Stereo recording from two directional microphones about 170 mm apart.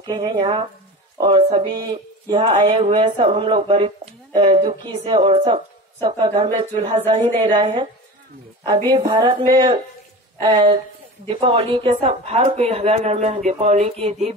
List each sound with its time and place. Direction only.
0.0 s speech: 25° right (ahead or behind)
8.9 s a woman's voice: 25° right (ahead or behind)